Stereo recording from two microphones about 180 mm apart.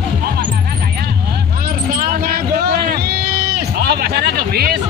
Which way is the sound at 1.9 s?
55° right (ahead or behind).